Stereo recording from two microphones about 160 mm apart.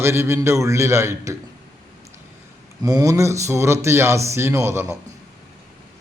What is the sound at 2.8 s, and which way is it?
A man's voice, 25° right (ahead or behind).